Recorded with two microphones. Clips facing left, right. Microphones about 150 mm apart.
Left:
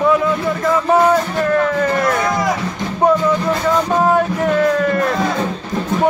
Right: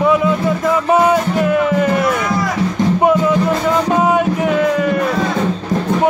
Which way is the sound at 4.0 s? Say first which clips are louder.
Right 1 dB; centre (ahead or behind).